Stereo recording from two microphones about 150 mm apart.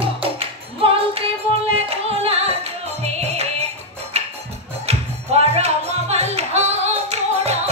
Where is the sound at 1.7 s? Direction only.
40° right (ahead or behind).